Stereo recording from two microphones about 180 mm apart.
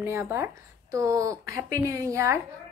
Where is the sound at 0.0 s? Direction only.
15° right (ahead or behind).